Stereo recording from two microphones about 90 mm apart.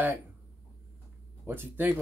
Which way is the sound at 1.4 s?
25° right (ahead or behind).